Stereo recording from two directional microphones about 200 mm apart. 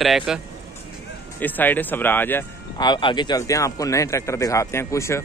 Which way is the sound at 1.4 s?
10° left (ahead or behind).